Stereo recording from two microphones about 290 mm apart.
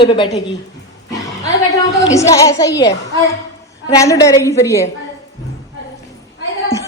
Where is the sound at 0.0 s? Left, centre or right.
Centre.